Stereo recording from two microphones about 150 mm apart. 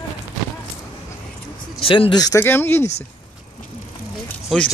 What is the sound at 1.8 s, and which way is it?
Speech, 35° left (ahead or behind).